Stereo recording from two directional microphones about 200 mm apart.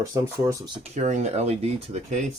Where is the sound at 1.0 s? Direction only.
35° right (ahead or behind).